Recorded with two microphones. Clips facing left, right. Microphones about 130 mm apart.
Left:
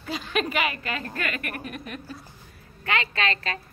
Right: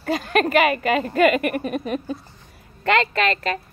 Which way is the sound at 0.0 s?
50° right (ahead or behind).